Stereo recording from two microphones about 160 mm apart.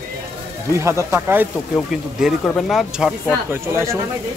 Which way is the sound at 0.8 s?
15° right (ahead or behind).